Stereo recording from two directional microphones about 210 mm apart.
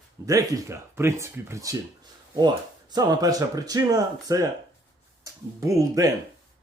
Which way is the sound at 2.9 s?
20° right (ahead or behind).